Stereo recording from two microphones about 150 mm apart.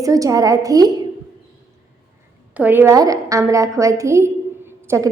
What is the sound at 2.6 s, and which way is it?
A woman's voice, 15° right (ahead or behind).